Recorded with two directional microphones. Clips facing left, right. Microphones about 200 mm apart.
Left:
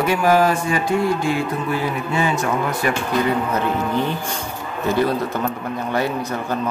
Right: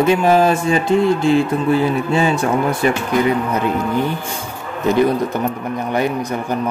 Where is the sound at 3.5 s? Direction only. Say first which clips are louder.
Right 2 dB; 15° right (ahead or behind).